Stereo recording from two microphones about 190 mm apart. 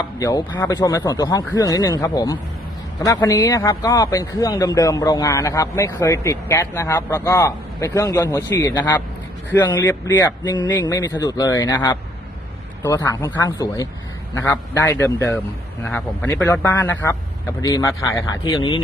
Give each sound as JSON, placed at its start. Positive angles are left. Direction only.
{"t": 0.0, "sound": "speech", "side_deg": 20}
{"t": 10.4, "sound": "speech", "side_deg": 20}